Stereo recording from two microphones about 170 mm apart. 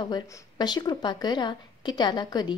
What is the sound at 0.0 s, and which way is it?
A woman's voice, 25° left (ahead or behind).